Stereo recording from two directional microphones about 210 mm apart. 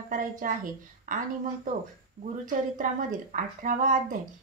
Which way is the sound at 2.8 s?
40° right (ahead or behind).